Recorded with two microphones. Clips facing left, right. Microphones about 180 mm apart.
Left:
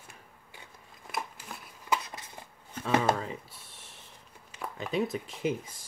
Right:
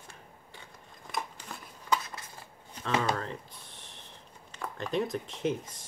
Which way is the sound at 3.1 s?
5° left (ahead or behind).